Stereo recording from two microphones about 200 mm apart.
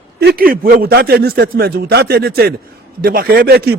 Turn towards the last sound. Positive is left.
turn(degrees=-55)  # may be behind; listen again after turning